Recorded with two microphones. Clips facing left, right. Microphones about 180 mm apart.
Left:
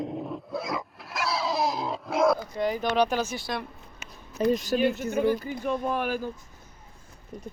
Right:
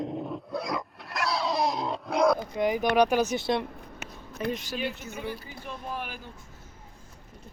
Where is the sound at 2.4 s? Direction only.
15° right (ahead or behind).